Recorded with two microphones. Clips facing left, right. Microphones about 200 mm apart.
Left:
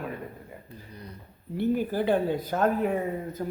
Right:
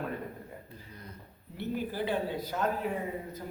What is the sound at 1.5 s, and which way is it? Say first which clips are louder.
Speech: left 8 dB; 50° left (ahead or behind).